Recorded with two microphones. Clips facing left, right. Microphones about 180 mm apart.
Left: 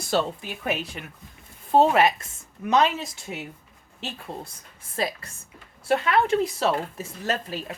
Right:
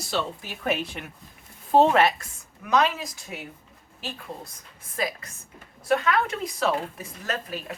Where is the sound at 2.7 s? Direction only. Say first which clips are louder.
Left 1 dB; 25° left (ahead or behind).